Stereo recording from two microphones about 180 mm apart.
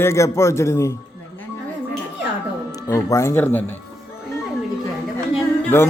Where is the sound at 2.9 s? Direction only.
15° left (ahead or behind).